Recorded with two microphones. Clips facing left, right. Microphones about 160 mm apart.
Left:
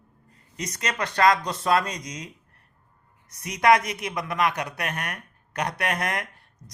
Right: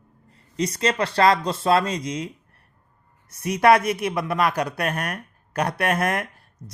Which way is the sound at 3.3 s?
30° right (ahead or behind).